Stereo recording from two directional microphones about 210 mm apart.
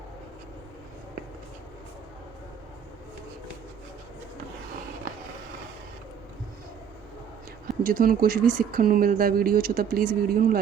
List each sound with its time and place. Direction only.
7.9 s speech: 45° right (ahead or behind)